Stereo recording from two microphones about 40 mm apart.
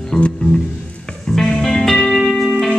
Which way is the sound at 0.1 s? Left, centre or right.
Centre.